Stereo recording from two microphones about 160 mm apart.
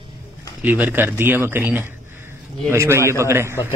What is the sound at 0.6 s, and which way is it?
A man's voice, 10° right (ahead or behind).